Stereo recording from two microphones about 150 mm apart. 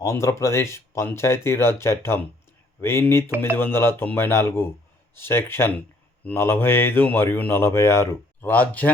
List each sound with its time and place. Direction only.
0.0 s speech: 20° left (ahead or behind)